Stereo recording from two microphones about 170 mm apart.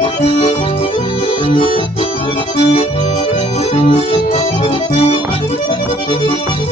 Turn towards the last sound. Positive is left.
turn(degrees=35)  # may be behind; listen again after turning